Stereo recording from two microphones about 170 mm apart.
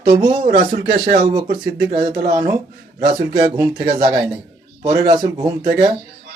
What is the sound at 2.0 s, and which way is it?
Speech, 55° right (ahead or behind).